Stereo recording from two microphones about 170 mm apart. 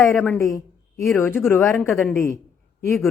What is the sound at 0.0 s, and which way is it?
Speech, 15° left (ahead or behind).